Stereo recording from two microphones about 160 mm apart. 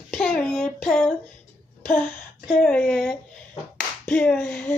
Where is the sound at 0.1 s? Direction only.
5° left (ahead or behind).